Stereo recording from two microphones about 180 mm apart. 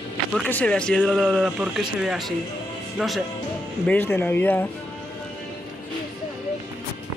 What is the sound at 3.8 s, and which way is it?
Speech, 10° left (ahead or behind).